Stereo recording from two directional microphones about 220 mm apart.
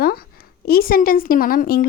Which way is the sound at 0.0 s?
45° left (ahead or behind).